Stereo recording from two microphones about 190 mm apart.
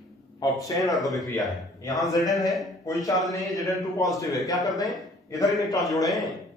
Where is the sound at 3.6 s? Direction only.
Centre (ahead or behind).